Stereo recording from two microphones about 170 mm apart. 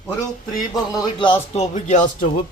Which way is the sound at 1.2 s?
30° left (ahead or behind).